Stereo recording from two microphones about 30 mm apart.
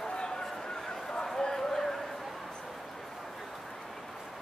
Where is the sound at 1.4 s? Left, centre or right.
Centre.